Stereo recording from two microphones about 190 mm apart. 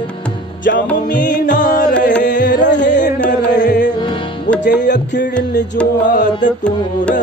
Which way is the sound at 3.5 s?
65° left (ahead or behind).